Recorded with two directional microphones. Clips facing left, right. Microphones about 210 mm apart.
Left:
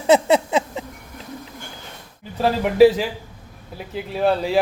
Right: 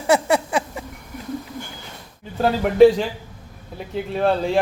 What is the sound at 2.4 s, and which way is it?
Speech, 5° left (ahead or behind).